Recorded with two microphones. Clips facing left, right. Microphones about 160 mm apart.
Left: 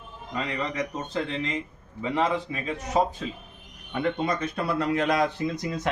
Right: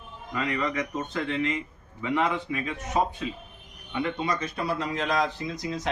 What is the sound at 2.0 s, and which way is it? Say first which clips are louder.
A man's voice: left 1 dB; 35° left (ahead or behind).